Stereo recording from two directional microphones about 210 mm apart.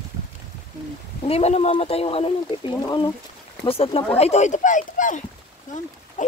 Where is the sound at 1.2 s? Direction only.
30° left (ahead or behind).